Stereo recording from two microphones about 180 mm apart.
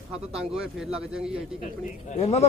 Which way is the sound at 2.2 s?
35° left (ahead or behind).